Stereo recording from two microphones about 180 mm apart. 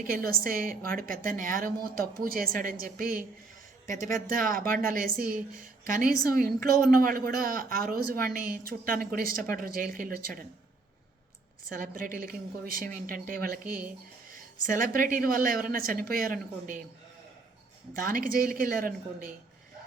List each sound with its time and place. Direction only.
0.0 s a man's voice: 55° right (ahead or behind)
11.7 s a man's voice: 50° right (ahead or behind)
17.9 s a man's voice: 50° right (ahead or behind)